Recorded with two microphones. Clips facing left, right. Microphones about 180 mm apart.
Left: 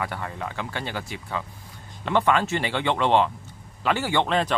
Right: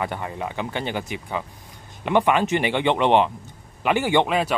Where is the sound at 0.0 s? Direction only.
20° right (ahead or behind).